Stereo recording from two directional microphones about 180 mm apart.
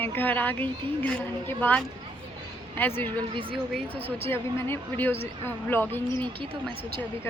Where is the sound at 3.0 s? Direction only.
30° right (ahead or behind).